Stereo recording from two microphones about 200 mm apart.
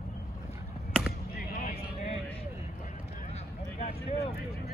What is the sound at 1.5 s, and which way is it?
Vehicle, 45° left (ahead or behind).